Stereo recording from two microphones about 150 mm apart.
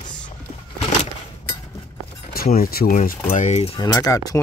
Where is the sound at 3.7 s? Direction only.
25° left (ahead or behind).